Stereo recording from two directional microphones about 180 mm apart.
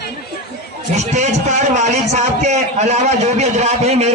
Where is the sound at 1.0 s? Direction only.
40° right (ahead or behind).